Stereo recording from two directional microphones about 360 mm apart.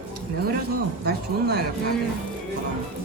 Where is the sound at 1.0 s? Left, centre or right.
Right.